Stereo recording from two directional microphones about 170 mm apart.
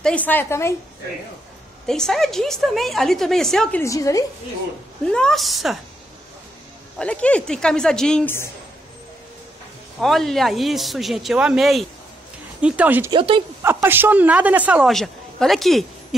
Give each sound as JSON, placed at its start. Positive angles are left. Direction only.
{"t": 0.0, "sound": "a woman's voice", "side_deg": 10}
{"t": 1.9, "sound": "a woman's voice", "side_deg": 5}
{"t": 3.8, "sound": "a woman's voice", "side_deg": 20}
{"t": 5.0, "sound": "a woman's voice", "side_deg": 5}
{"t": 7.0, "sound": "a woman's voice", "side_deg": 5}
{"t": 9.9, "sound": "a woman's voice", "side_deg": 0}
{"t": 13.1, "sound": "speech", "side_deg": -35}
{"t": 13.8, "sound": "a woman's voice", "side_deg": -10}